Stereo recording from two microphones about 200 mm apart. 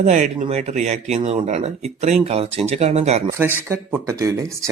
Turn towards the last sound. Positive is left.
turn(degrees=-15)  # may be behind; listen again after turning